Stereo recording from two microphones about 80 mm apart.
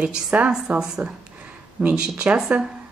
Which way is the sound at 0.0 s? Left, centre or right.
Centre.